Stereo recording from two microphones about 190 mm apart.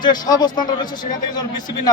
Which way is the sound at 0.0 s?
20° left (ahead or behind).